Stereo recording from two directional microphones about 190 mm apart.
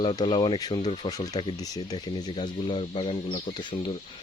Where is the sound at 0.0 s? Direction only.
25° left (ahead or behind).